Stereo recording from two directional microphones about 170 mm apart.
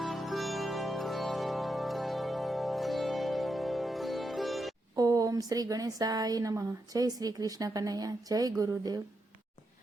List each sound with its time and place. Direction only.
0.0 s music: centre (ahead or behind)
4.9 s a woman's voice: 20° right (ahead or behind)